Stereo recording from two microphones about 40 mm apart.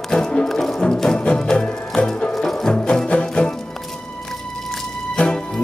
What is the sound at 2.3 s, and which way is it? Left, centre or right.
Music, centre.